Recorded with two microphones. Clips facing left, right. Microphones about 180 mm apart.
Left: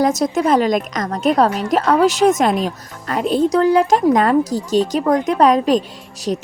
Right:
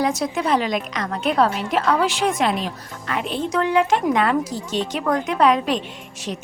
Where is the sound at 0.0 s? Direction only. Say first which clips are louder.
Left 6 dB; 40° left (ahead or behind).